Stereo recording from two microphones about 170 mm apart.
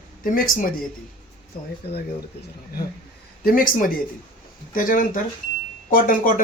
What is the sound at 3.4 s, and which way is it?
Speech, 55° left (ahead or behind).